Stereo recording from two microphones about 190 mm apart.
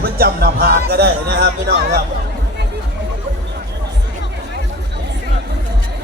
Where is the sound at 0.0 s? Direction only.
55° right (ahead or behind).